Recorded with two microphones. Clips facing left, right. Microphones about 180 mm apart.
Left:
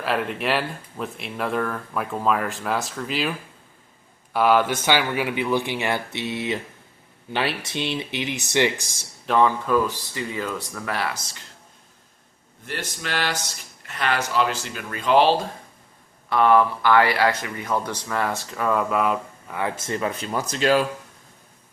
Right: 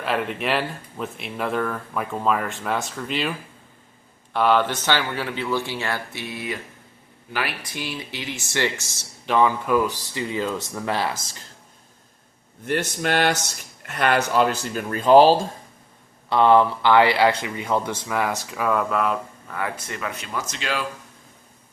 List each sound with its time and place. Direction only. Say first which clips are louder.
0.0 s speech: even; centre (ahead or behind)
9.2 s speech: even; centre (ahead or behind)
9.6 s speech: even; 15° right (ahead or behind)
12.6 s speech: right 8 dB; 55° right (ahead or behind); by 15.4 s 40° right (ahead or behind)
16.3 s speech: right 1 dB; 25° right (ahead or behind)
18.3 s speech: even; centre (ahead or behind)
19.5 s speech: left 2 dB; 25° left (ahead or behind)
19.8 s speech: left 5 dB; 35° left (ahead or behind)